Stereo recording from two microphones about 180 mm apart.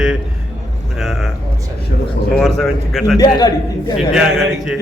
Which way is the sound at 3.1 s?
20° left (ahead or behind).